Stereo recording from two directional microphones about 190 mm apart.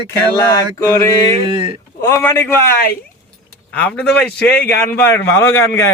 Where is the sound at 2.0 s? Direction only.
15° left (ahead or behind).